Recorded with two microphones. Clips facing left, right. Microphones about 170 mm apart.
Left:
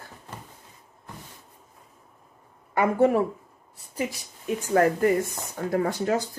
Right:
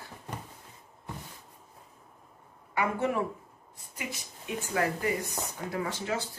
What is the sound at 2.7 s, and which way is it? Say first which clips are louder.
A woman's voice: left 8 dB; 40° left (ahead or behind).